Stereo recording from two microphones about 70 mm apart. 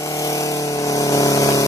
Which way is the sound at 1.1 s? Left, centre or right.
Left.